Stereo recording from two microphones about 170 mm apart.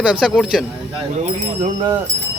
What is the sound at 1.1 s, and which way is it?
Speech, 40° right (ahead or behind).